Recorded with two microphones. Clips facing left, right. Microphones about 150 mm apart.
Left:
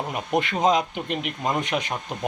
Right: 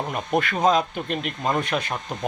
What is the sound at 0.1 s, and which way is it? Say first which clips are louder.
Speech: even; 15° left (ahead or behind).